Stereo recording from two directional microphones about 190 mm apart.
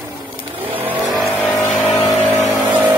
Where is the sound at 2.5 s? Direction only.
10° right (ahead or behind).